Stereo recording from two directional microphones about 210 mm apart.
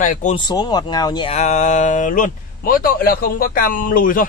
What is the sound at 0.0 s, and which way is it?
Speech, 35° left (ahead or behind).